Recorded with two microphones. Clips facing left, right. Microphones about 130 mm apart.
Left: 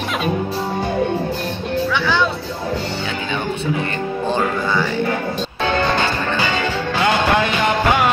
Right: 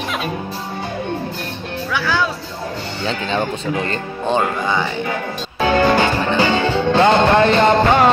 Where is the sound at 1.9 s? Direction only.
5° right (ahead or behind).